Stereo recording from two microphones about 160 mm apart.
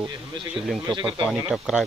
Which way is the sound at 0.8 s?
30° right (ahead or behind).